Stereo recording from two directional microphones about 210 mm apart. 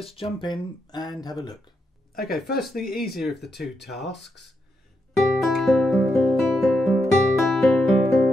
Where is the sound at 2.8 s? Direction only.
45° left (ahead or behind).